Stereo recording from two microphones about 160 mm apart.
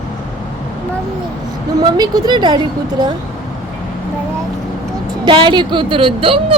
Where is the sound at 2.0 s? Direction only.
25° right (ahead or behind).